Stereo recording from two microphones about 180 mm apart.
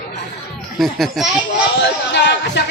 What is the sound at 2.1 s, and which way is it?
Speech, 75° left (ahead or behind).